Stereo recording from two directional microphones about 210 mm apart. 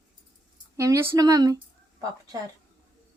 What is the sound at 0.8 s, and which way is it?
Speech, 15° right (ahead or behind).